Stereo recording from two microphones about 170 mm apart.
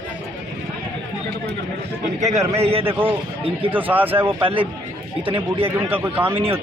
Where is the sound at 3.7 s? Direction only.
10° right (ahead or behind).